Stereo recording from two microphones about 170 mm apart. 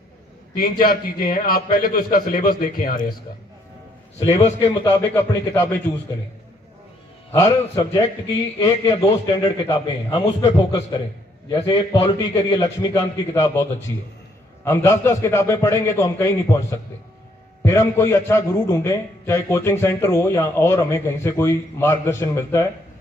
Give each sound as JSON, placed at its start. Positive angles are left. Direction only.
{"t": 0.6, "sound": "a man's voice", "side_deg": 60}
{"t": 4.3, "sound": "a man's voice", "side_deg": 15}
{"t": 8.5, "sound": "a man's voice", "side_deg": 15}
{"t": 9.2, "sound": "a man's voice", "side_deg": 30}